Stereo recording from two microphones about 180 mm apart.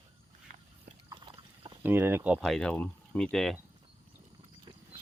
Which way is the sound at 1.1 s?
25° right (ahead or behind).